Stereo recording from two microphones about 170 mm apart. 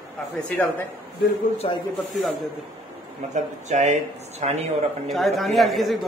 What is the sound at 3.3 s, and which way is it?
Speech, 45° right (ahead or behind).